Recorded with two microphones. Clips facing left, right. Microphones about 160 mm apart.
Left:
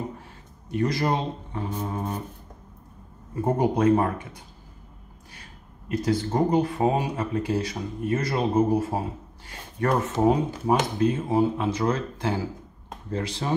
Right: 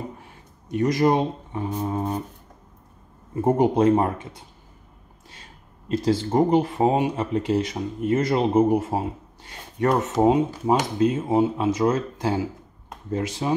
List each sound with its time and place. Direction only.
0.7 s speech: 20° right (ahead or behind)
3.3 s speech: 25° right (ahead or behind)
5.3 s speech: 25° right (ahead or behind)